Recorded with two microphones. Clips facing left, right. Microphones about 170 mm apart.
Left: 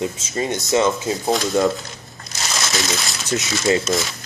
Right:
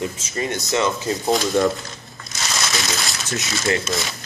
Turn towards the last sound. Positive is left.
turn(degrees=20)  # may be behind; listen again after turning